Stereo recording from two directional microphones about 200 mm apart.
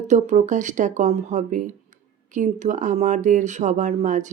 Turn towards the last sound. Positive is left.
turn(degrees=-40)  # may be behind; listen again after turning